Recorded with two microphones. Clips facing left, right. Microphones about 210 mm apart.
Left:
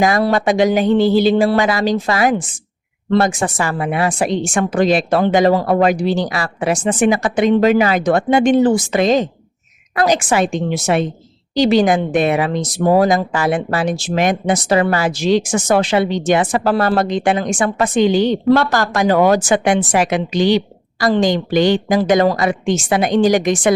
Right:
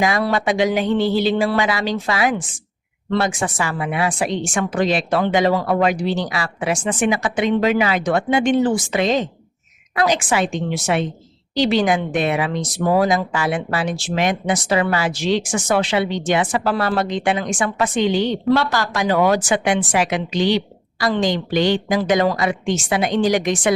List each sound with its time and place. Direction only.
0.0 s speech: 45° left (ahead or behind)